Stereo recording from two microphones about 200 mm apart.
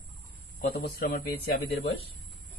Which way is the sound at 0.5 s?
45° left (ahead or behind).